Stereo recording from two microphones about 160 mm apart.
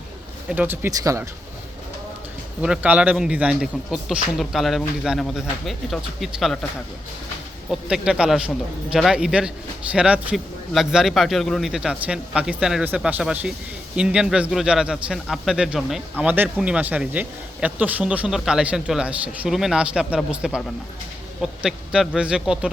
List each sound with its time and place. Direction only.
0.5 s speech: 10° right (ahead or behind)
2.6 s a man's voice: 10° right (ahead or behind)
7.7 s a man's voice: 5° right (ahead or behind)